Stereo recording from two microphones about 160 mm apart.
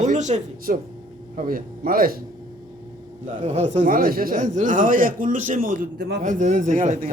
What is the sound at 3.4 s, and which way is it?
A man's voice, 45° right (ahead or behind).